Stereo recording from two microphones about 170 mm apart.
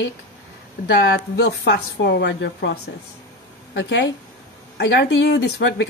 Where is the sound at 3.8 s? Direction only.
90° left.